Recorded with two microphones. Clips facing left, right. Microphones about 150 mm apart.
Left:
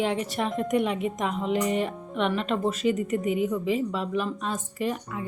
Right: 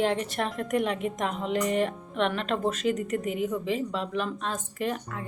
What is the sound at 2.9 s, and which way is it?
Speech, 45° right (ahead or behind).